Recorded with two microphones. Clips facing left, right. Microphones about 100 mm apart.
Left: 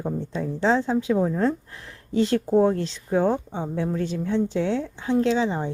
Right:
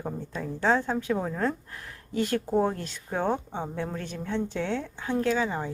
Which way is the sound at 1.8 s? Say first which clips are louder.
Left 6 dB; 25° left (ahead or behind).